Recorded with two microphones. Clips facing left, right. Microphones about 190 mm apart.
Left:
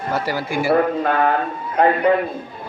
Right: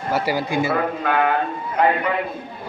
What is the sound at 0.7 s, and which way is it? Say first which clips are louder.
Speech: left 4 dB; 35° left (ahead or behind).